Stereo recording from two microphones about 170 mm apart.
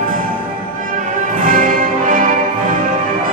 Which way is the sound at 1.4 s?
50° right (ahead or behind).